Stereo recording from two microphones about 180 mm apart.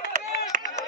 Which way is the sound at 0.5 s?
50° right (ahead or behind).